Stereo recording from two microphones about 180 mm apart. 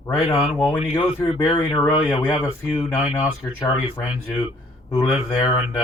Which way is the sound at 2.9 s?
5° right (ahead or behind).